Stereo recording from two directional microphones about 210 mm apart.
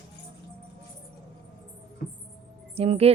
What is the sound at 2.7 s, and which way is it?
Speech, 30° right (ahead or behind).